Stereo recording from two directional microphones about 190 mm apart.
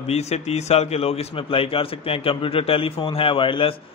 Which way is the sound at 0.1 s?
35° left (ahead or behind).